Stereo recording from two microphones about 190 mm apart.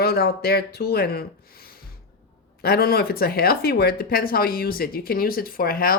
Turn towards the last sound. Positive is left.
turn(degrees=50)  # may be behind; listen again after turning